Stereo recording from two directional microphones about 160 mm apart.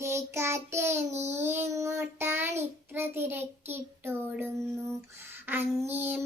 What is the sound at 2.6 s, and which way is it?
A child's voice, 15° right (ahead or behind).